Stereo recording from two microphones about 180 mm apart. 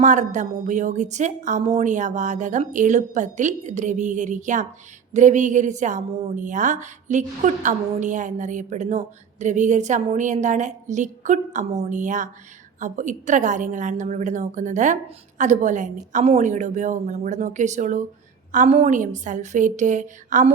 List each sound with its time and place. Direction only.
0.0 s speech: 40° right (ahead or behind)